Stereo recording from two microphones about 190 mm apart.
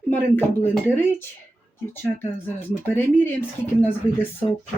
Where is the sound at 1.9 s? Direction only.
10° left (ahead or behind).